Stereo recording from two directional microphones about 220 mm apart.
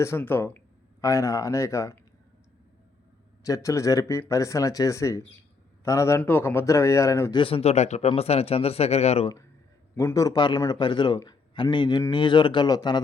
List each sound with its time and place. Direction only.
0.0 s speech: 10° left (ahead or behind)
3.4 s a man's voice: 15° left (ahead or behind)
9.9 s a man's voice: 10° left (ahead or behind)